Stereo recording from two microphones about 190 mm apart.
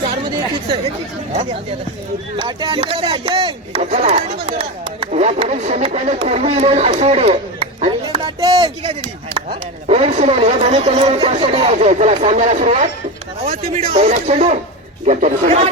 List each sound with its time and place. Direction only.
0.3 s speech: 20° right (ahead or behind)
2.3 s wood: 25° right (ahead or behind)
8.8 s wood: 35° right (ahead or behind)